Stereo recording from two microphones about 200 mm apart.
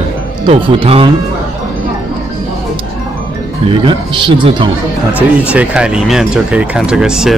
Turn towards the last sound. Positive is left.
turn(degrees=-5)  # may be behind; listen again after turning